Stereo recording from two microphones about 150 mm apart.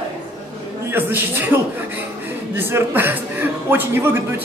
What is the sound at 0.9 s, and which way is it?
Speech, 15° right (ahead or behind).